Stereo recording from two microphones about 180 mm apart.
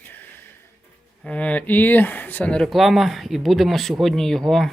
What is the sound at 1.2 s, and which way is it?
Speech, 5° left (ahead or behind).